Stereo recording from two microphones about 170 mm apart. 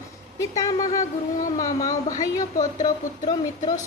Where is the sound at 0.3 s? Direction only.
20° left (ahead or behind).